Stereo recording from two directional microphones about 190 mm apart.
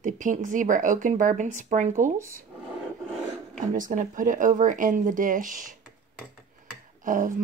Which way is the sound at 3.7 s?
45° right (ahead or behind).